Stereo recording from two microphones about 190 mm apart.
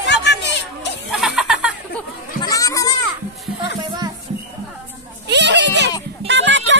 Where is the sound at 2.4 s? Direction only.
15° left (ahead or behind).